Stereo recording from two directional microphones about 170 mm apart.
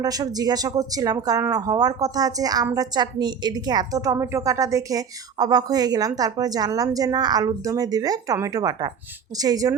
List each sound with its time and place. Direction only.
0.0 s a woman's voice: 20° right (ahead or behind)